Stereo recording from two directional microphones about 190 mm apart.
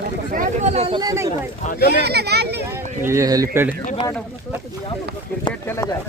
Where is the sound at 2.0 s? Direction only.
60° right (ahead or behind).